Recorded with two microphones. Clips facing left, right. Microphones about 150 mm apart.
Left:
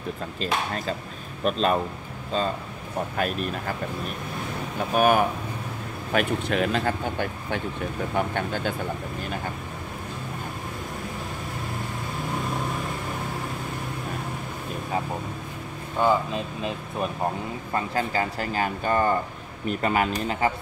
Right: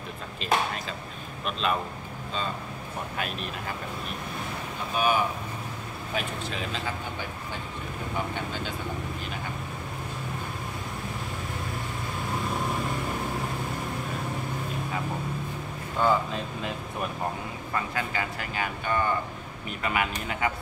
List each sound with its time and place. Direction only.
0.4 s speech: 40° left (ahead or behind)
3.2 s speech: 45° left (ahead or behind)
4.9 s speech: 50° left (ahead or behind)
6.1 s speech: 60° left (ahead or behind)
16.0 s speech: 20° left (ahead or behind)
17.7 s speech: 35° left (ahead or behind)